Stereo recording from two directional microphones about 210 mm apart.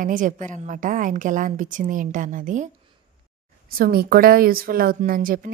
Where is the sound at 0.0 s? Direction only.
40° right (ahead or behind).